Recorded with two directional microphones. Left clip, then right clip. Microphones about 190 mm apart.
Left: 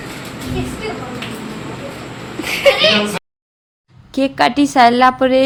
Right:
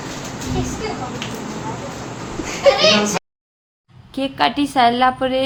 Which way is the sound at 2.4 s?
Centre (ahead or behind).